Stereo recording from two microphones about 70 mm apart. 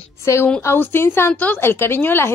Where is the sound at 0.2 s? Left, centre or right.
Left.